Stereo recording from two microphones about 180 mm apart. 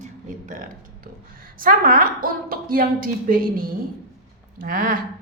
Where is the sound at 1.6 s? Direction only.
50° right (ahead or behind).